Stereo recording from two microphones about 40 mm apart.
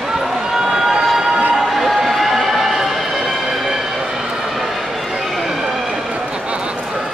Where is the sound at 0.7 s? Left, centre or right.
Centre.